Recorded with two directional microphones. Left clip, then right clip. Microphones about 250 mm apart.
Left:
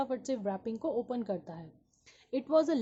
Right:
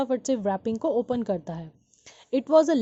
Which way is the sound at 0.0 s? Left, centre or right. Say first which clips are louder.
Right 8 dB; right.